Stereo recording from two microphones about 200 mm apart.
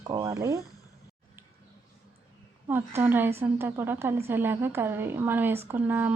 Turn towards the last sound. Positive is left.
turn(degrees=-10)  # may be behind; listen again after turning